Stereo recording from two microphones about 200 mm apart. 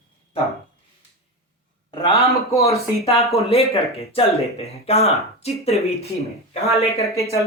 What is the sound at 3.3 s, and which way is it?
Speech, 30° left (ahead or behind).